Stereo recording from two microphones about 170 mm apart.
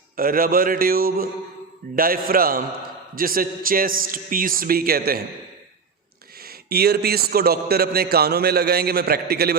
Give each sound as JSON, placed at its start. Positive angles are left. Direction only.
{"t": 0.2, "sound": "a man's voice", "side_deg": -55}
{"t": 6.4, "sound": "a man's voice", "side_deg": -65}